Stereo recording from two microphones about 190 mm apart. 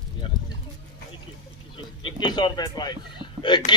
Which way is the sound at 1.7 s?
25° left (ahead or behind).